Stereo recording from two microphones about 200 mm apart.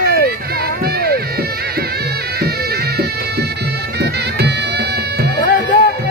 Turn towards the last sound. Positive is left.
turn(degrees=40)  # may be behind; listen again after turning